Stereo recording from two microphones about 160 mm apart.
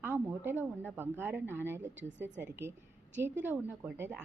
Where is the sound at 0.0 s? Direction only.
15° right (ahead or behind).